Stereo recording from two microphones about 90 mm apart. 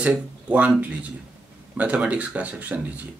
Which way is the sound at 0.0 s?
15° right (ahead or behind).